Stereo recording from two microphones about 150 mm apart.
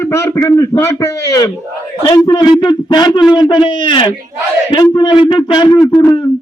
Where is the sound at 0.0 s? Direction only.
20° left (ahead or behind).